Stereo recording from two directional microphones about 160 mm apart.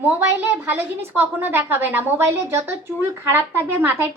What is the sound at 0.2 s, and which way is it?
A woman's voice, 15° right (ahead or behind).